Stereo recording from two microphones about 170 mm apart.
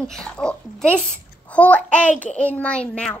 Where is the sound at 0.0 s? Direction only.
5° left (ahead or behind).